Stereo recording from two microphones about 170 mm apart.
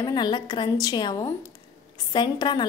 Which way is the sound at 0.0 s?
25° left (ahead or behind).